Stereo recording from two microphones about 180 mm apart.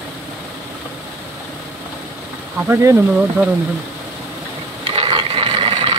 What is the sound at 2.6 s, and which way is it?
Speech, 15° right (ahead or behind).